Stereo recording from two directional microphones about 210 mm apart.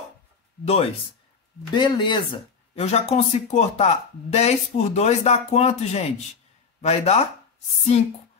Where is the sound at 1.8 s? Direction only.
20° left (ahead or behind).